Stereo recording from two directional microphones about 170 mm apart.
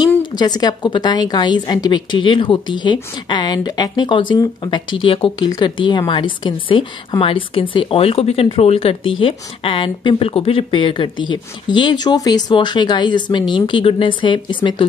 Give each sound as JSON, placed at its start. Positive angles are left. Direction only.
{"t": 0.3, "sound": "a woman's voice", "side_deg": 25}